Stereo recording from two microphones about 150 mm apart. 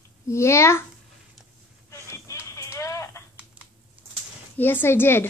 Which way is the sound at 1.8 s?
20° left (ahead or behind).